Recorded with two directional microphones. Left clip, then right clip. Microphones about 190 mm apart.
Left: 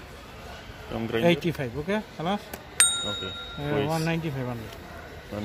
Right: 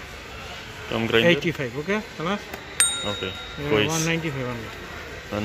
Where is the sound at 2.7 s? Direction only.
Centre (ahead or behind).